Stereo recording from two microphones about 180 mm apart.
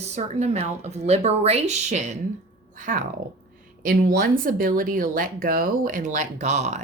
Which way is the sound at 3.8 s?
55° right (ahead or behind).